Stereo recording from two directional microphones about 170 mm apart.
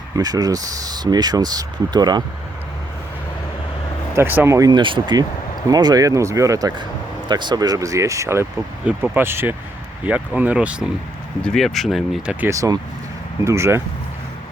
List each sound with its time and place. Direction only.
0.2 s speech: 20° right (ahead or behind)
4.1 s speech: 15° right (ahead or behind)
12.5 s speech: 20° right (ahead or behind)